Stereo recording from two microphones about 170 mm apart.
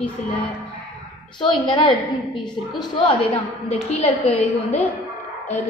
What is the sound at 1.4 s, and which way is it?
Speech, 30° left (ahead or behind).